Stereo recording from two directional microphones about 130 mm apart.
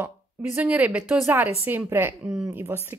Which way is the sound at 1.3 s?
15° right (ahead or behind).